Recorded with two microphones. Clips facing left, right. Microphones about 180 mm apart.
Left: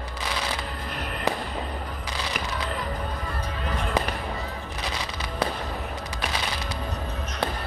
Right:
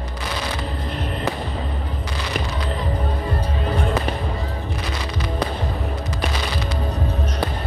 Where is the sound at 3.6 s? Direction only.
30° right (ahead or behind).